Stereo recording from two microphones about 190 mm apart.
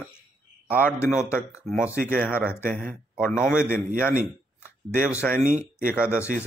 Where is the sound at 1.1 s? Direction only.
5° right (ahead or behind).